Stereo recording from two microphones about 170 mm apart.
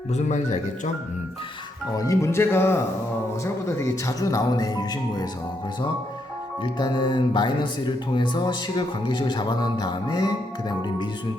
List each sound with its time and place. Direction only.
0.1 s speech: 45° left (ahead or behind)
2.0 s speech: 20° left (ahead or behind)
6.7 s speech: 30° left (ahead or behind)